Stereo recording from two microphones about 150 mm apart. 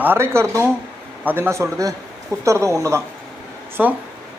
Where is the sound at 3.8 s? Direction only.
10° right (ahead or behind).